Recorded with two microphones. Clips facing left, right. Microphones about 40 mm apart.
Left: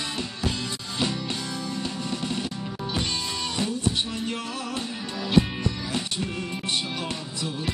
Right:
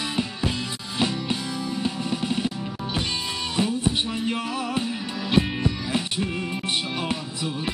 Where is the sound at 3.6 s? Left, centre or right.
Centre.